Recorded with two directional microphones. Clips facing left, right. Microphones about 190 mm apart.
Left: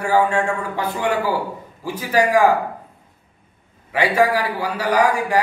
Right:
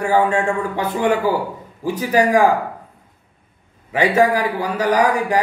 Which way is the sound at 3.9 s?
20° right (ahead or behind).